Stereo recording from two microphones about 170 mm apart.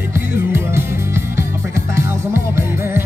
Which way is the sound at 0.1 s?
15° right (ahead or behind).